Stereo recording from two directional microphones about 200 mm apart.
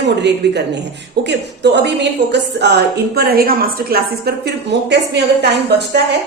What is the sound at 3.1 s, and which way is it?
A woman's voice, 50° right (ahead or behind).